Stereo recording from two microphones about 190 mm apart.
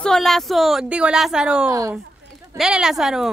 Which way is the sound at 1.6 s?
15° right (ahead or behind).